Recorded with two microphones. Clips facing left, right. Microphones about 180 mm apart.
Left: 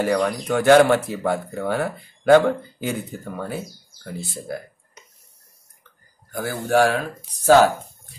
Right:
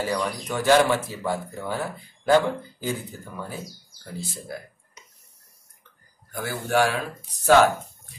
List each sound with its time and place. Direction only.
0.0 s speech: 60° left (ahead or behind)
4.5 s a sound: 55° left (ahead or behind)
6.3 s speech: 45° left (ahead or behind)